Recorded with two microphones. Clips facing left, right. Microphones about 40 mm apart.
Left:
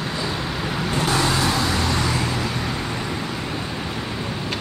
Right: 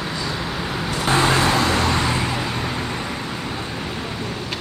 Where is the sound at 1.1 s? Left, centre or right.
Right.